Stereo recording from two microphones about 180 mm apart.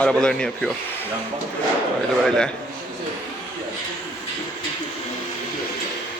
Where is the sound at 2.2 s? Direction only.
5° left (ahead or behind).